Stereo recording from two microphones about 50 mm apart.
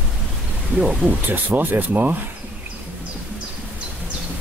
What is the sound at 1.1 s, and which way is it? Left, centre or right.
Speech, right.